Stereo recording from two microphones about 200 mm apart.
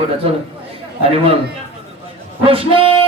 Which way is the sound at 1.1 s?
30° right (ahead or behind).